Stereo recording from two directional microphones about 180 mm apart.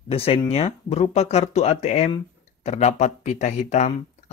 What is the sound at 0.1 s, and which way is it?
Speech, 30° left (ahead or behind).